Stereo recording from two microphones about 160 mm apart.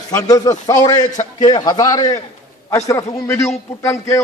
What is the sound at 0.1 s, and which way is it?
A man's voice, 25° left (ahead or behind).